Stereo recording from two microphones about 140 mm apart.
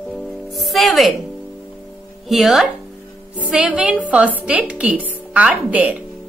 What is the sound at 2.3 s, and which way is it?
A woman's voice, centre (ahead or behind).